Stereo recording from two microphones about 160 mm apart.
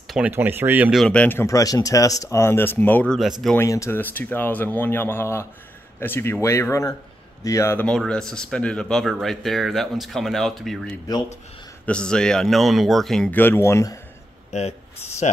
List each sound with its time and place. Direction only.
0.1 s speech: 10° right (ahead or behind)
1.0 s speech: 10° left (ahead or behind)
3.2 s speech: centre (ahead or behind)
3.5 s speech: 20° left (ahead or behind); by 10.8 s centre (ahead or behind)
11.8 s speech: 5° left (ahead or behind)
14.5 s speech: 40° left (ahead or behind)